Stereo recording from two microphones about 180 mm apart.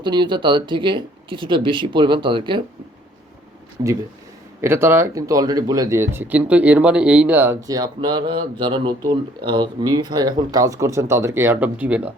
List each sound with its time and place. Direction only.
0.0 s speech: 25° right (ahead or behind)
4.6 s speech: 15° right (ahead or behind)